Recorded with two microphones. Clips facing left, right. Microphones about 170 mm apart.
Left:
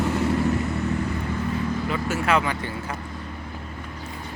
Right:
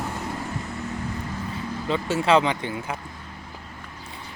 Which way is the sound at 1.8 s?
25° right (ahead or behind).